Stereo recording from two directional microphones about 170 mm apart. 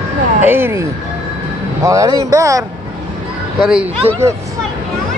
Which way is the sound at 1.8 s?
20° right (ahead or behind).